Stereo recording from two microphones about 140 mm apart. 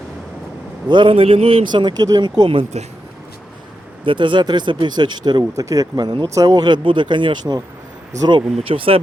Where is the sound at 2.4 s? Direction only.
40° right (ahead or behind).